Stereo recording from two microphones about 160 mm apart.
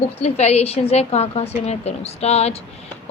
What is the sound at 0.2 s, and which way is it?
A woman's voice, 40° left (ahead or behind).